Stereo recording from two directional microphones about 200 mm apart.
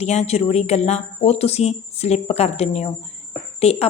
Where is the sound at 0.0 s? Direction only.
35° left (ahead or behind).